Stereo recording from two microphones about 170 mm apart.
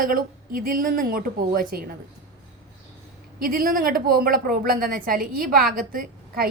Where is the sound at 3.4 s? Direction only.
60° right (ahead or behind).